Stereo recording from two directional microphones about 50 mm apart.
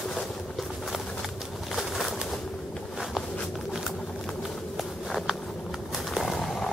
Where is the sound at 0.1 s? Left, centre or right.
Centre.